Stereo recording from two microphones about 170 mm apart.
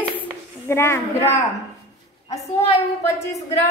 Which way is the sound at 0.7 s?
15° left (ahead or behind).